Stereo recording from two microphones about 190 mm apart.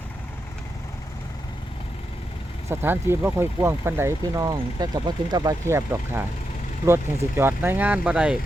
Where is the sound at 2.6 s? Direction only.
10° right (ahead or behind).